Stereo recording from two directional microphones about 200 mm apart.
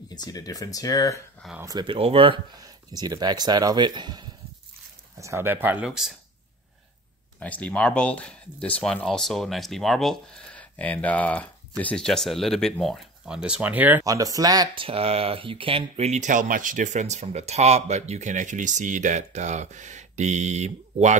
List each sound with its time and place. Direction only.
0.1 s speech: 20° left (ahead or behind)
1.6 s speech: 20° right (ahead or behind); by 6.1 s 5° right (ahead or behind)
7.3 s speech: 5° left (ahead or behind); by 21.2 s 35° right (ahead or behind)